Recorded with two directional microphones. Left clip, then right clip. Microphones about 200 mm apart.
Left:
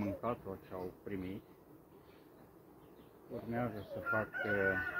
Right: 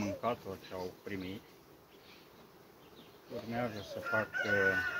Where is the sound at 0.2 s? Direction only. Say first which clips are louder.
Right 3 dB; 10° right (ahead or behind).